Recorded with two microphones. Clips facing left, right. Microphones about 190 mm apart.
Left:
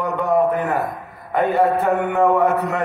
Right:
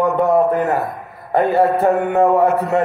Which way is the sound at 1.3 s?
40° right (ahead or behind).